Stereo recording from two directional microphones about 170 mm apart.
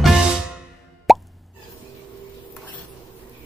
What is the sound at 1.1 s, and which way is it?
Plop, centre (ahead or behind).